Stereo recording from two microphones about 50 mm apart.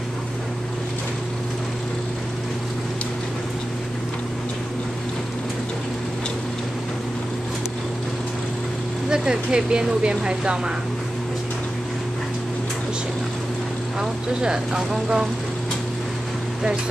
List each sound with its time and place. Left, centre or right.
9.1 s speech: centre
14.4 s speech: centre